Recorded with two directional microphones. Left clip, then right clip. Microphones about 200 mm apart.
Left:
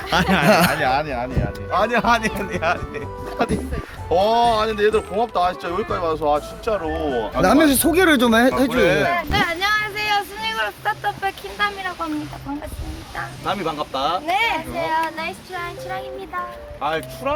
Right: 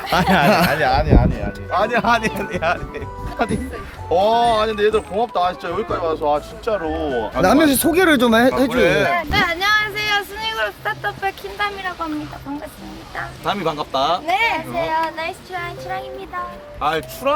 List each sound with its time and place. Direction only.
0.1 s speech: 10° right (ahead or behind)
0.4 s speech: 5° left (ahead or behind)
0.8 s a man's voice: 25° right (ahead or behind)
1.7 s speech: centre (ahead or behind)
7.4 s speech: 5° right (ahead or behind)
8.8 s a man's voice: 30° right (ahead or behind)
9.3 s speech: 20° right (ahead or behind)
13.4 s speech: 55° right (ahead or behind)
14.3 s speech: 10° right (ahead or behind)
14.8 s speech: 5° left (ahead or behind)
16.8 s speech: 50° right (ahead or behind)